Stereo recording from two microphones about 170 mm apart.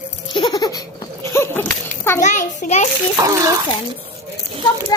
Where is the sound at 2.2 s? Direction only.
45° left (ahead or behind).